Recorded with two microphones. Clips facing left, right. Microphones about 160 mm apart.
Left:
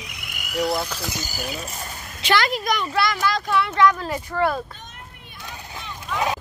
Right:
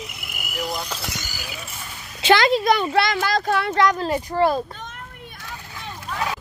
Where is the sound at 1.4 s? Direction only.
40° left (ahead or behind).